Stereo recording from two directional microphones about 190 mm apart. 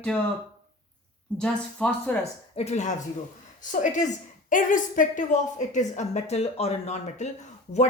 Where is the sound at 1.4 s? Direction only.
5° left (ahead or behind).